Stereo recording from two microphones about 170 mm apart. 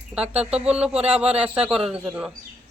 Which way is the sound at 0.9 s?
35° right (ahead or behind).